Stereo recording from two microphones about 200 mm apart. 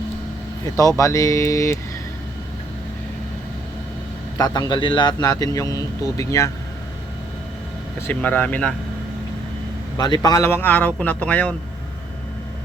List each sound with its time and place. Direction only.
0.8 s a man's voice: 15° left (ahead or behind)
4.4 s a man's voice: 20° left (ahead or behind)
8.0 s a man's voice: 10° left (ahead or behind)
10.0 s a man's voice: 20° left (ahead or behind)